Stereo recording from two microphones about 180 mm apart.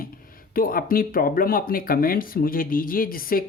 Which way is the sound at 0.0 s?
55° left (ahead or behind).